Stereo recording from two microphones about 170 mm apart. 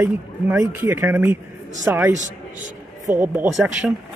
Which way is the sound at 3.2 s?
10° right (ahead or behind).